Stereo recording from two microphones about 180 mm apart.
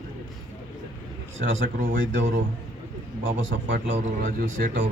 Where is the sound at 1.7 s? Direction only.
50° right (ahead or behind).